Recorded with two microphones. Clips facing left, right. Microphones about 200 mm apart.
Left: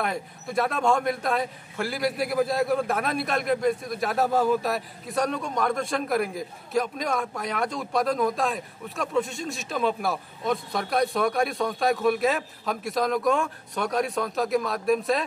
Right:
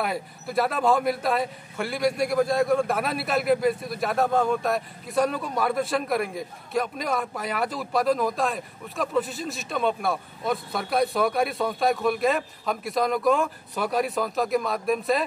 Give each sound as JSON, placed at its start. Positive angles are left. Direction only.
{"t": 0.0, "sound": "a man's voice", "side_deg": 0}